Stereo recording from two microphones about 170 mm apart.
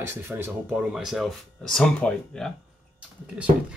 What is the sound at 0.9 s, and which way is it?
Speech, centre (ahead or behind).